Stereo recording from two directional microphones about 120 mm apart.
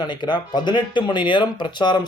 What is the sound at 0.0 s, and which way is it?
Speech, 40° left (ahead or behind).